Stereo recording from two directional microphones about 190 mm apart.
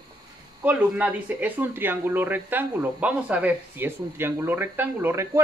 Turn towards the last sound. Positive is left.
turn(degrees=-10)  # may be behind; listen again after turning